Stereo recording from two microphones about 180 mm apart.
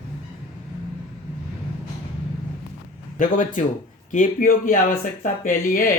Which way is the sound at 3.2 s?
45° left (ahead or behind).